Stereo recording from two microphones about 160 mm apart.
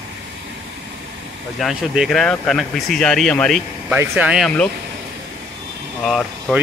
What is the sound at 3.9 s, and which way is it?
Speech, 10° right (ahead or behind).